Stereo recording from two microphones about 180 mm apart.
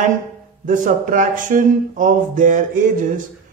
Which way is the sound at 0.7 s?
45° right (ahead or behind).